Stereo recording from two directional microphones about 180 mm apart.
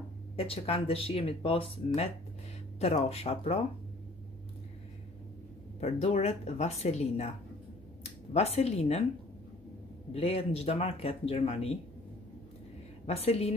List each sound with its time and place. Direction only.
0.4 s speech: 35° left (ahead or behind)
5.8 s speech: 35° left (ahead or behind)
10.1 s speech: 35° left (ahead or behind)
13.0 s speech: 35° left (ahead or behind)